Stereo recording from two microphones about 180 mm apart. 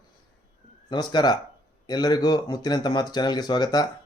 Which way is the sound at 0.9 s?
25° left (ahead or behind).